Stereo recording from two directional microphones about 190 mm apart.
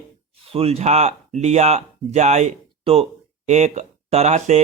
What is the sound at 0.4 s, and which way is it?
Speech, 30° right (ahead or behind).